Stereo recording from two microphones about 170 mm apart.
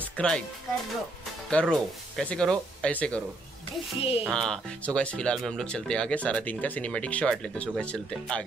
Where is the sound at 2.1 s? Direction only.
5° left (ahead or behind).